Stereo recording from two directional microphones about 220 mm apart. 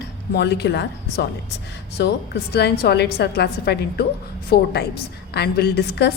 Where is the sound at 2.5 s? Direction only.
50° left (ahead or behind).